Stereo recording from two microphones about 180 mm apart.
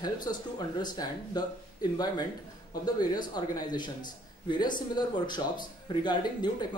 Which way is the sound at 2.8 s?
20° left (ahead or behind).